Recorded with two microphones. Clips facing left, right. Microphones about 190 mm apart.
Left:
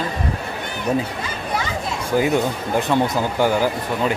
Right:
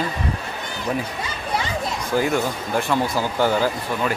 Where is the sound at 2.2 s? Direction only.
20° left (ahead or behind).